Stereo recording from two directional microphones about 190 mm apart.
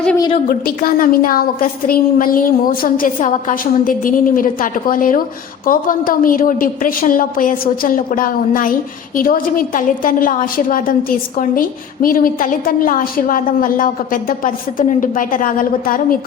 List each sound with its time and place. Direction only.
0.4 s a woman's voice: 50° left (ahead or behind)
12.0 s a woman's voice: 50° left (ahead or behind)